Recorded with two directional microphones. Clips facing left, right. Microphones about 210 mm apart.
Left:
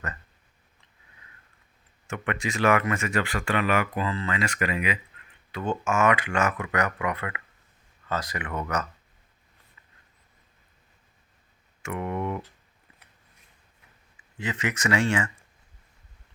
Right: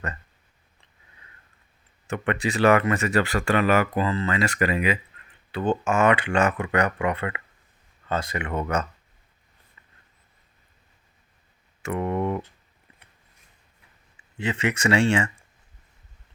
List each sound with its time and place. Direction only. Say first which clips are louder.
2.0 s speech: right 4 dB; 35° right (ahead or behind)
11.8 s speech: right 4 dB; 35° right (ahead or behind)
14.3 s speech: right 4 dB; 30° right (ahead or behind)